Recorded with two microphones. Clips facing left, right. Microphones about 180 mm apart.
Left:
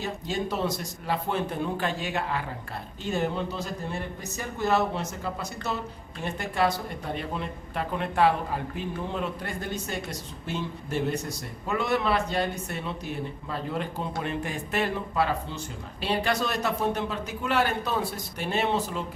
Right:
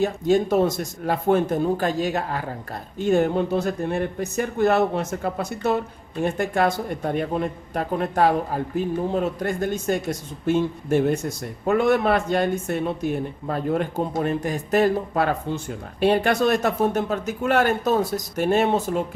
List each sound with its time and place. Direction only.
0.0 s speech: 50° right (ahead or behind)
3.0 s speech: 50° right (ahead or behind)